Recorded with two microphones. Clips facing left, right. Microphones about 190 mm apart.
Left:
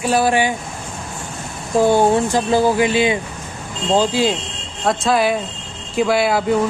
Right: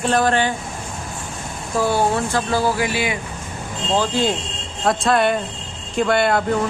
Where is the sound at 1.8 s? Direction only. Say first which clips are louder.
Left 5 dB; 20° left (ahead or behind).